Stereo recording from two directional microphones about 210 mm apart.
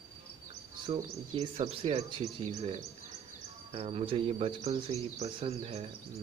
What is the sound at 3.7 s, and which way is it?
Speech, 30° right (ahead or behind).